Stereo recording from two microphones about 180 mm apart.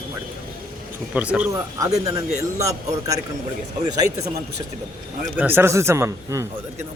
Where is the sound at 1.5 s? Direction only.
20° right (ahead or behind).